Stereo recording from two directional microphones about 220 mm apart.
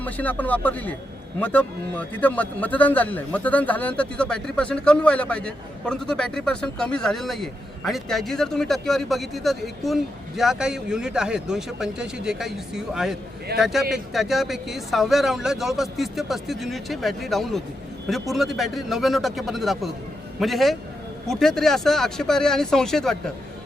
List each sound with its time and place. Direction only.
0.0 s a man's voice: 5° left (ahead or behind)